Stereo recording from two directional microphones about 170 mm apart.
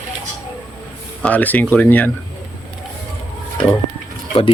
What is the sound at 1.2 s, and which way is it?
Speech, 10° left (ahead or behind).